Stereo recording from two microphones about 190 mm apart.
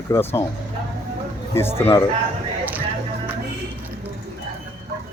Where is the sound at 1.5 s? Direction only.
10° left (ahead or behind).